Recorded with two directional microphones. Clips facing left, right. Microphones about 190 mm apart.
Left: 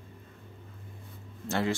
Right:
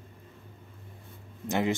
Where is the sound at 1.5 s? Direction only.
20° right (ahead or behind).